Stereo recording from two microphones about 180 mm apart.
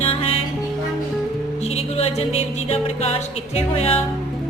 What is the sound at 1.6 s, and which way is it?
Music, 35° left (ahead or behind).